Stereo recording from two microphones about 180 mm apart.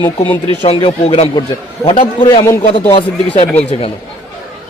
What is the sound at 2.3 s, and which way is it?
Speech, 20° left (ahead or behind).